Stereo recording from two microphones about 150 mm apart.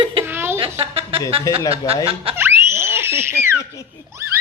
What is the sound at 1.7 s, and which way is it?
Cough, 40° right (ahead or behind).